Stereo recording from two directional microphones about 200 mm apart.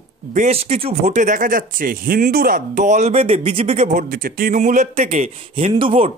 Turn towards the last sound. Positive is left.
turn(degrees=-30)  # may be behind; listen again after turning